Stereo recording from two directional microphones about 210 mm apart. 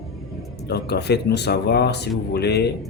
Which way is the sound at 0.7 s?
50° left (ahead or behind).